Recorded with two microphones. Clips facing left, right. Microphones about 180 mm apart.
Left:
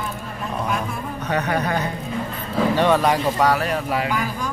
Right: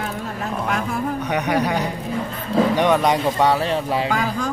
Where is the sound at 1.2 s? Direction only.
15° right (ahead or behind).